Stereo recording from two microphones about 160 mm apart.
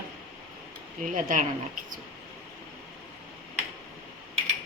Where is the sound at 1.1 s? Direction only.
55° right (ahead or behind).